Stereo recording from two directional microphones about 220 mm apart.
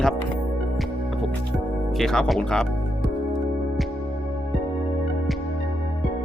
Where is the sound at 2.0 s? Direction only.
Centre (ahead or behind).